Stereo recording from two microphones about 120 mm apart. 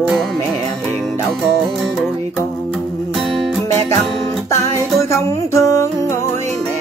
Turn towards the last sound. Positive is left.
turn(degrees=25)  # may be behind; listen again after turning